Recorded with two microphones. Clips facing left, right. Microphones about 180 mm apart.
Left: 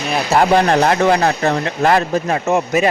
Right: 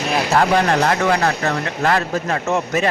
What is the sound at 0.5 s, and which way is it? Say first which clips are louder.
Speech: left 3 dB; 25° left (ahead or behind).